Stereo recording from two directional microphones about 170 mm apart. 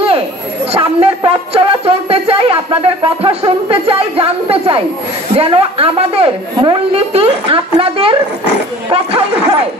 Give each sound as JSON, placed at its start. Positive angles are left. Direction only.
{"t": 0.7, "sound": "music", "side_deg": -35}
{"t": 5.3, "sound": "a woman's voice", "side_deg": -35}